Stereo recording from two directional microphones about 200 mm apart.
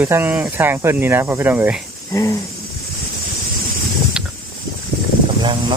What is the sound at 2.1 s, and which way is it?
Speech, 15° left (ahead or behind).